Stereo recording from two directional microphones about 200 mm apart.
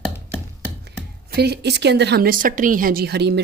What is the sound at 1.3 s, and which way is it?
Speech, 55° right (ahead or behind).